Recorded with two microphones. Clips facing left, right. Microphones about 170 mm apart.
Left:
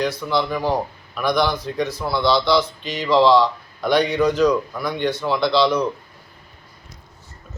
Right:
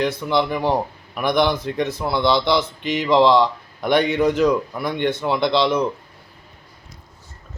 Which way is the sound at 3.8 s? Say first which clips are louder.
Even; 55° right (ahead or behind).